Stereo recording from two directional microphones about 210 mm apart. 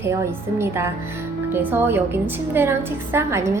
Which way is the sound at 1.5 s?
10° right (ahead or behind).